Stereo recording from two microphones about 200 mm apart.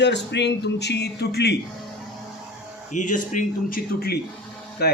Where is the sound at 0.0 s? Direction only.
60° left (ahead or behind).